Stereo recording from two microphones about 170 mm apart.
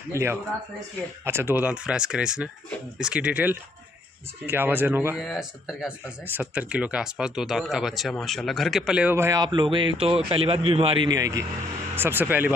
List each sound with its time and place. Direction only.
0.1 s speech: 15° right (ahead or behind)
5.2 s speech: centre (ahead or behind)